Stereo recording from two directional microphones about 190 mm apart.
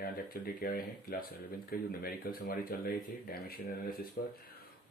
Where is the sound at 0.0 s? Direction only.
50° left (ahead or behind).